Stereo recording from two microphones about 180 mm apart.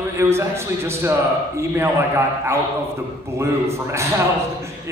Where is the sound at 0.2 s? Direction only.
15° right (ahead or behind).